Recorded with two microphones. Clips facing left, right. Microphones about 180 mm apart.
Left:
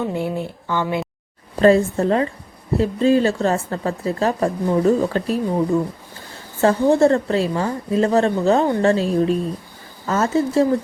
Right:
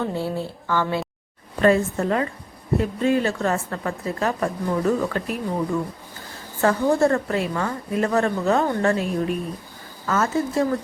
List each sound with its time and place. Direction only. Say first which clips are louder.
0.0 s speech: left 2 dB; 15° left (ahead or behind)
1.5 s a woman's voice: left 4 dB; 30° left (ahead or behind)